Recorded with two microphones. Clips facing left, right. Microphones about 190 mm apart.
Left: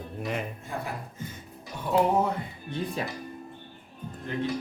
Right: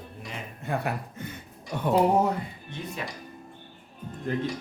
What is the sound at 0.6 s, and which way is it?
Speech, 65° right (ahead or behind).